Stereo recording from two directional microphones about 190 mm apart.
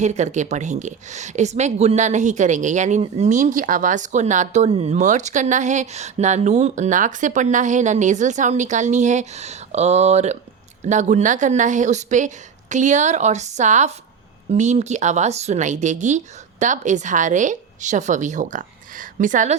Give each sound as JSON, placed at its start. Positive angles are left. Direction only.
{"t": 0.0, "sound": "speech", "side_deg": -35}